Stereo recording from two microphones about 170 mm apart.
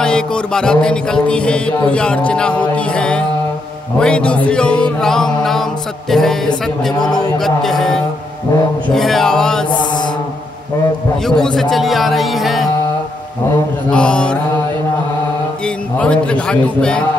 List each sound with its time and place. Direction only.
0.0 s mantra: 5° left (ahead or behind)
9.7 s mantra: 25° left (ahead or behind)
11.2 s mantra: 5° left (ahead or behind)
13.9 s mantra: 5° left (ahead or behind)
15.6 s a man's voice: 5° left (ahead or behind)